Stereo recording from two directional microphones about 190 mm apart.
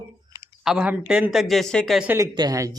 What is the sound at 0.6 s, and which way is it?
Speech, 5° right (ahead or behind).